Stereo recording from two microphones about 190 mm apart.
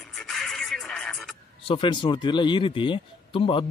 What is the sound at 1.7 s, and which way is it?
A man's voice, 25° left (ahead or behind).